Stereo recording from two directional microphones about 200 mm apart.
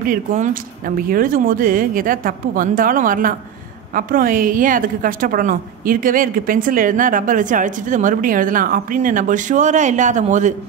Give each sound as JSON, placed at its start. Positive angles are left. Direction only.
{"t": 0.0, "sound": "a woman's voice", "side_deg": -45}